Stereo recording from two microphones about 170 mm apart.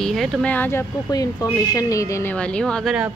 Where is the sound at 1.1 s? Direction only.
20° left (ahead or behind); by 3.0 s centre (ahead or behind).